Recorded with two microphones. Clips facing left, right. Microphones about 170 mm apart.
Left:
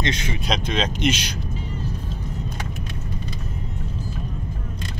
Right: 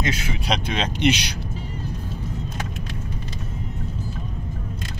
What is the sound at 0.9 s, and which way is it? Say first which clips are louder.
Speech: right 2 dB; 65° right (ahead or behind).